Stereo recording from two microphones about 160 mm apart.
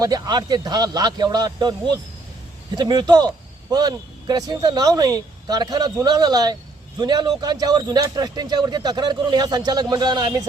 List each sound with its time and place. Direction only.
0.0 s speech: 25° right (ahead or behind)